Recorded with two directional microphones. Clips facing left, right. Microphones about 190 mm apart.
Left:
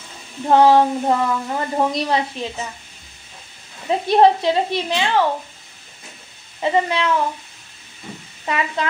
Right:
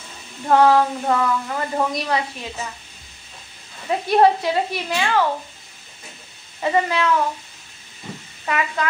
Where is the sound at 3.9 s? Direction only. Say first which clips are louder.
Left 2 dB; 25° left (ahead or behind).